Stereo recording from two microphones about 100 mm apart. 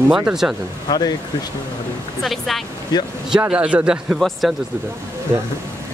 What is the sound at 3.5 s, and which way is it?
Speech, 10° right (ahead or behind).